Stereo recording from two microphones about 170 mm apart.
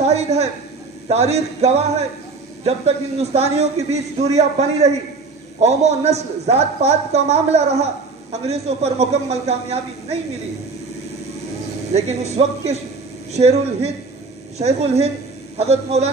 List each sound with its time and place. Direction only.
0.0 s a woman's voice: 40° right (ahead or behind)
3.2 s a woman's voice: 40° right (ahead or behind)
11.9 s a woman's voice: 40° right (ahead or behind)